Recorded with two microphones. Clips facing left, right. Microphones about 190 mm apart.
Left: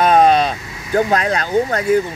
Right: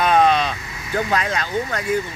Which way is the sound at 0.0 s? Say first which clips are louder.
Left 4 dB; 40° left (ahead or behind).